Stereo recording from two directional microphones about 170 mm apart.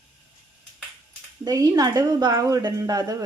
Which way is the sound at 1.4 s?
20° right (ahead or behind).